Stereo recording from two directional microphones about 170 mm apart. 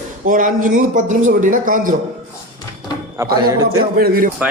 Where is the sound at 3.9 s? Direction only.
60° right (ahead or behind).